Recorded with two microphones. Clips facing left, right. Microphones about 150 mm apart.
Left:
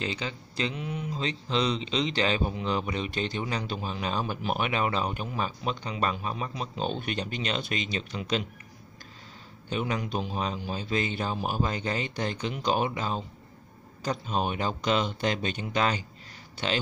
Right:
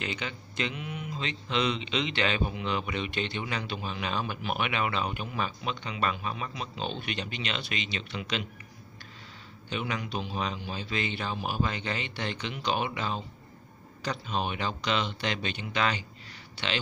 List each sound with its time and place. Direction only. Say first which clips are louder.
0.0 s speech: left 2 dB; 35° left (ahead or behind)
9.7 s speech: left 3 dB; 40° left (ahead or behind)